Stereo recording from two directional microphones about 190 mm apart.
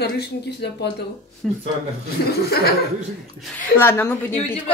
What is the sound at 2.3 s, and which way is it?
Speech, 55° left (ahead or behind).